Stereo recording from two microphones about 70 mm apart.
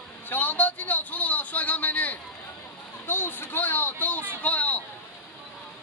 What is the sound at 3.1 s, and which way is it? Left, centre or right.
Speech, left.